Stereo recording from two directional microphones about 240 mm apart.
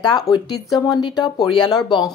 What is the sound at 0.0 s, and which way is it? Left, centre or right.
Speech, centre.